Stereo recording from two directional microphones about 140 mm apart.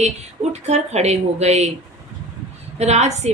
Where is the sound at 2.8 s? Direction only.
50° right (ahead or behind).